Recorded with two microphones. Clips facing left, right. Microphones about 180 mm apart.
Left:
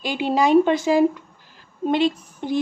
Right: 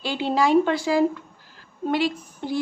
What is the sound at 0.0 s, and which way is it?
A woman's voice, 15° left (ahead or behind).